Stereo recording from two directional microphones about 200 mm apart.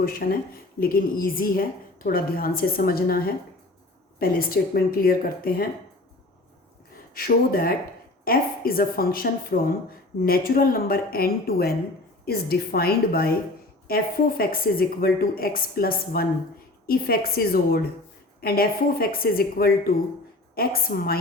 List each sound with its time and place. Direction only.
0.0 s a woman's voice: 45° left (ahead or behind)
7.1 s a woman's voice: 45° left (ahead or behind)